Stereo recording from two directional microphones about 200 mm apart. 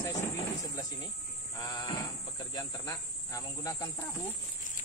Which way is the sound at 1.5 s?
20° left (ahead or behind).